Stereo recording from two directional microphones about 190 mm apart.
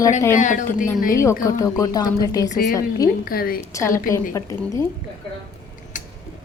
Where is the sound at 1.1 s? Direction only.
15° left (ahead or behind).